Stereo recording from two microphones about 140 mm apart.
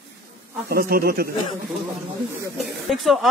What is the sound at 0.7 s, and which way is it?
Speech, 90° right.